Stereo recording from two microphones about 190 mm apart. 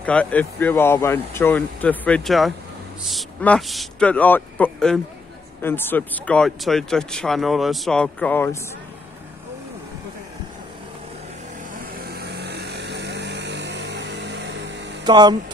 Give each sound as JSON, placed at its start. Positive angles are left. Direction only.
{"t": 0.0, "sound": "speech", "side_deg": 5}
{"t": 11.8, "sound": "vehicle", "side_deg": -55}
{"t": 15.0, "sound": "speech", "side_deg": -20}